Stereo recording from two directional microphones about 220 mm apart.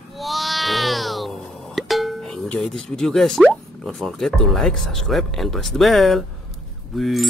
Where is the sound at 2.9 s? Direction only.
Centre (ahead or behind).